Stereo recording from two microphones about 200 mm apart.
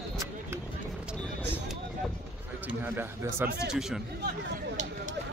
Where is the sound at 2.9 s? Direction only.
10° right (ahead or behind).